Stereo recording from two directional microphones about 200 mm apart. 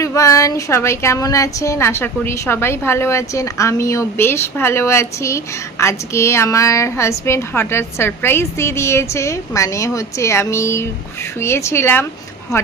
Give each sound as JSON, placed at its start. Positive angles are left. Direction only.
{"t": 0.0, "sound": "speech", "side_deg": 15}